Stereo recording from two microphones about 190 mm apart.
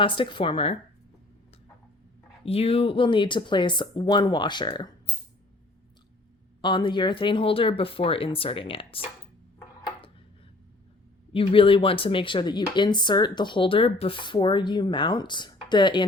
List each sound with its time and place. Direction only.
0.0 s speech: 25° left (ahead or behind)
2.4 s speech: 30° left (ahead or behind)
6.6 s speech: 25° left (ahead or behind)
11.3 s speech: 30° left (ahead or behind)